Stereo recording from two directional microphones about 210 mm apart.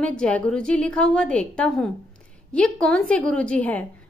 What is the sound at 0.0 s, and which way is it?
A woman's voice, 5° left (ahead or behind).